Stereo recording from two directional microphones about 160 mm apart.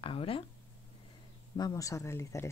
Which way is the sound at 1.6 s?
25° left (ahead or behind).